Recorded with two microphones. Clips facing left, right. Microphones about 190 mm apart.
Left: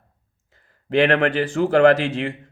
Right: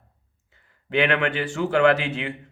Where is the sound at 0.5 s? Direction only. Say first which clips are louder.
Left 5 dB; 40° left (ahead or behind).